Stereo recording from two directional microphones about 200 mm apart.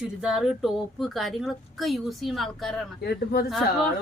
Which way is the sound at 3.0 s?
50° left (ahead or behind).